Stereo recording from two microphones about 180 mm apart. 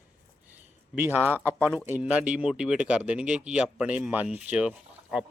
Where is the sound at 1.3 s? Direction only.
10° left (ahead or behind).